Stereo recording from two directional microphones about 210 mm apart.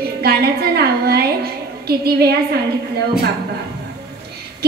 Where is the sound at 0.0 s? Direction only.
50° right (ahead or behind).